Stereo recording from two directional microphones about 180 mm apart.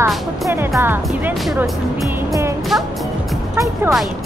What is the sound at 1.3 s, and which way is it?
Speech, centre (ahead or behind).